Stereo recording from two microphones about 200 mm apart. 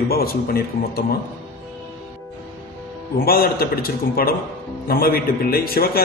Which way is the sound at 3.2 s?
50° left (ahead or behind).